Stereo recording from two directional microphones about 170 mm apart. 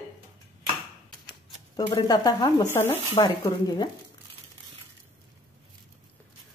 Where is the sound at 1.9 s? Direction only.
20° left (ahead or behind).